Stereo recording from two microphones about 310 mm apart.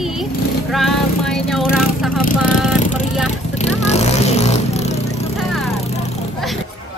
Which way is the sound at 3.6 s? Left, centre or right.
Left.